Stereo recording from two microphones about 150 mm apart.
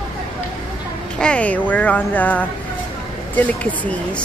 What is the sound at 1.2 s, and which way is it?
Speech, 5° left (ahead or behind).